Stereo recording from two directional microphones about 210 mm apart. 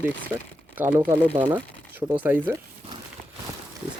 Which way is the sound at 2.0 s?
20° right (ahead or behind).